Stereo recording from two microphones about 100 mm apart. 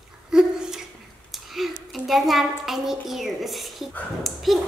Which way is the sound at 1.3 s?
Centre (ahead or behind).